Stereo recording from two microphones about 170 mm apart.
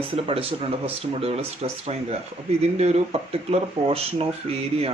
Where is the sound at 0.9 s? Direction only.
35° right (ahead or behind).